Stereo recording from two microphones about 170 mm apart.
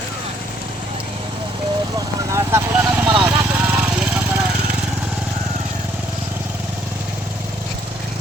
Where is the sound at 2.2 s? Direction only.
15° right (ahead or behind).